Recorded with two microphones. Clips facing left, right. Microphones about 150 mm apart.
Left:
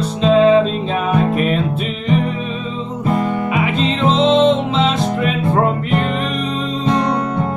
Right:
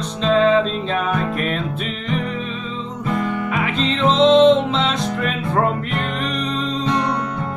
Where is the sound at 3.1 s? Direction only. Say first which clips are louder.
Left 4 dB; 35° left (ahead or behind).